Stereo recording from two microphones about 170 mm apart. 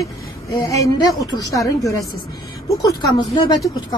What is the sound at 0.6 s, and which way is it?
A woman's voice, 20° left (ahead or behind).